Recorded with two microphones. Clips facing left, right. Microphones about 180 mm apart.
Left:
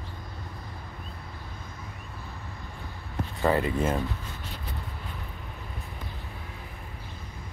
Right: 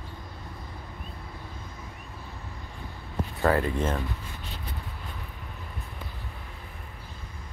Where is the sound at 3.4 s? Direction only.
Centre (ahead or behind).